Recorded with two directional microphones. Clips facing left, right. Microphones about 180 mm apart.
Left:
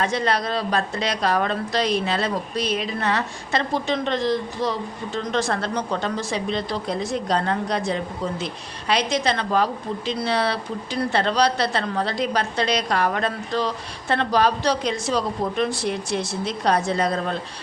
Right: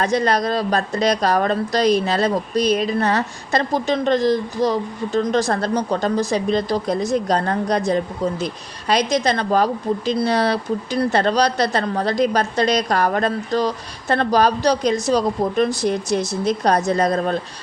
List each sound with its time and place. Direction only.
0.0 s a woman's voice: 40° right (ahead or behind)